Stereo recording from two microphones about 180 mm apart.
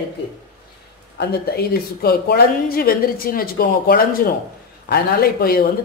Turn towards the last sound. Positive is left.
turn(degrees=60)  # may be behind; listen again after turning